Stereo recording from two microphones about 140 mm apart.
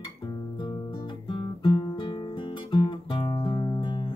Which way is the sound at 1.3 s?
35° left (ahead or behind).